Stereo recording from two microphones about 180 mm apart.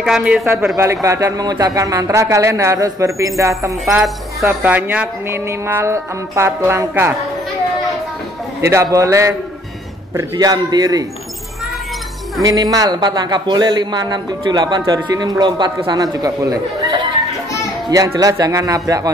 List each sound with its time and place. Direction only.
0.0 s a man's voice: 5° right (ahead or behind)
3.8 s a man's voice: centre (ahead or behind)
8.5 s a man's voice: 15° right (ahead or behind)
12.4 s a man's voice: 20° right (ahead or behind)